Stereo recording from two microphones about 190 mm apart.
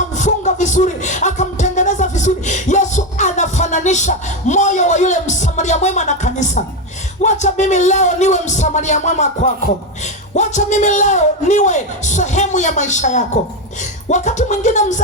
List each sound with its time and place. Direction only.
0.2 s music: 40° left (ahead or behind)
7.2 s a man's voice: 40° left (ahead or behind)